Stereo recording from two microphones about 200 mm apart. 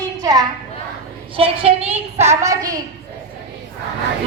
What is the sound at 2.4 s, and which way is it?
Speech, 15° right (ahead or behind).